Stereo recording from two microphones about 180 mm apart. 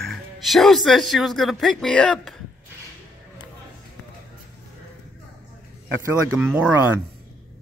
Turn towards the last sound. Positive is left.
turn(degrees=-10)  # may be behind; listen again after turning